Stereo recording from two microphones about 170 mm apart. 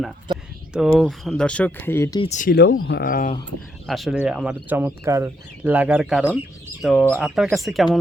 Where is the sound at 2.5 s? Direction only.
75° left (ahead or behind); by 3.3 s 55° left (ahead or behind).